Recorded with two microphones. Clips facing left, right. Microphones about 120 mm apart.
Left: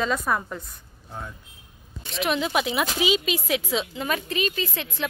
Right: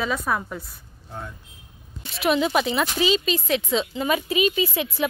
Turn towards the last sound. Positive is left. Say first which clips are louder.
# right 6 dB
turn(degrees=-10)  # may be behind; listen again after turning